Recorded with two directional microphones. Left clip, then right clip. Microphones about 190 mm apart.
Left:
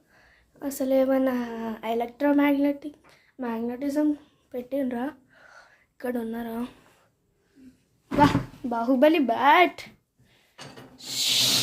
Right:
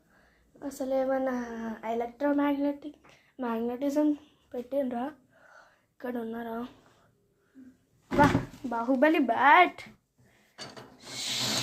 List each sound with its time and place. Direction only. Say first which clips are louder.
0.6 s a woman's voice: left 6 dB; 30° left (ahead or behind)
3.1 s a woman's voice: even; 5° right (ahead or behind)
4.5 s speech: left 2 dB; 15° left (ahead or behind)
5.3 s a sound: left 4 dB; 30° left (ahead or behind)
8.7 s a woman's voice: left 4 dB; 25° left (ahead or behind)
10.9 s snake: left 10 dB; 30° left (ahead or behind)